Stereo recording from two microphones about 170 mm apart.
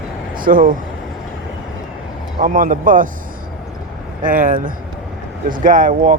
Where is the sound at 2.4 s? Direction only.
50° right (ahead or behind).